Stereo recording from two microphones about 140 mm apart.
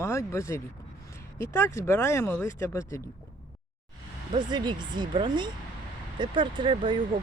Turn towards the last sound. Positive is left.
turn(degrees=-35)  # may be behind; listen again after turning